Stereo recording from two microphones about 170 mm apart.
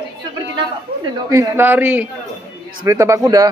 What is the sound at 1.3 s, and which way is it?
A woman's voice, 15° right (ahead or behind).